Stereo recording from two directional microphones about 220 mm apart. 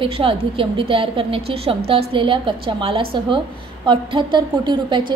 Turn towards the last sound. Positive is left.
turn(degrees=-20)  # may be behind; listen again after turning